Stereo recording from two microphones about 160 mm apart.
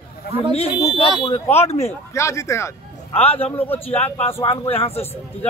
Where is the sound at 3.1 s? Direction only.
35° left (ahead or behind).